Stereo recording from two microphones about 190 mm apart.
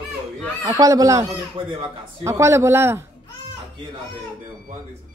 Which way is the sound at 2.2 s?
15° right (ahead or behind).